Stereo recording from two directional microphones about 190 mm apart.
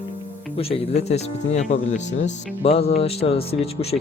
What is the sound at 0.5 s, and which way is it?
Speech, 30° left (ahead or behind).